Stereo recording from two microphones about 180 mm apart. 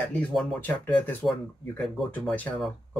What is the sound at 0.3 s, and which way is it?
Speech, centre (ahead or behind).